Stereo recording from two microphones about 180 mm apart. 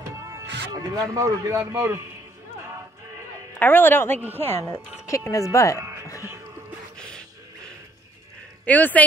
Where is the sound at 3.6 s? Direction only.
10° left (ahead or behind).